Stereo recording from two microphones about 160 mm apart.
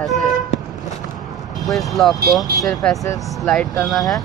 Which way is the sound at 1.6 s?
Centre (ahead or behind).